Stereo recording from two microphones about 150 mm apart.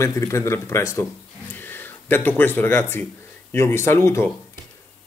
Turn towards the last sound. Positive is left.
turn(degrees=15)  # may be behind; listen again after turning